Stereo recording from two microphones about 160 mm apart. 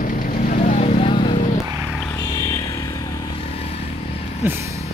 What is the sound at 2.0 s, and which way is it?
Vehicle, 10° left (ahead or behind).